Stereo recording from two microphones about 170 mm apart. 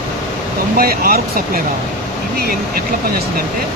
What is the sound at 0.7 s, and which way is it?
Speech, 60° right (ahead or behind).